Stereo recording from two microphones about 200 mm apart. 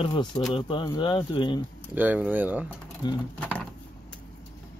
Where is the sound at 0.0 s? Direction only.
20° left (ahead or behind).